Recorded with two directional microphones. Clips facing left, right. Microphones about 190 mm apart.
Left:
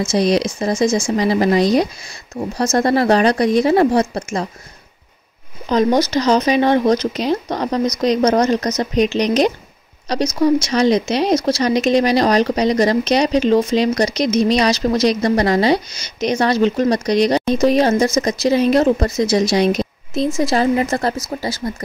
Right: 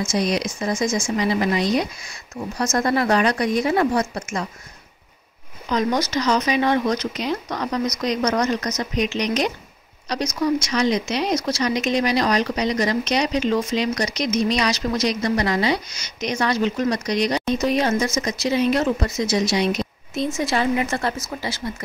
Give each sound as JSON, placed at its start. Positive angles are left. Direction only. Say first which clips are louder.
{"t": 0.1, "sound": "speech", "louder": "left 8 dB", "side_deg": 30}
{"t": 5.7, "sound": "speech", "louder": "left 6 dB", "side_deg": 30}